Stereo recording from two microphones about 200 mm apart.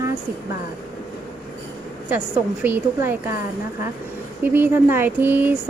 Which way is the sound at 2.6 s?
10° right (ahead or behind).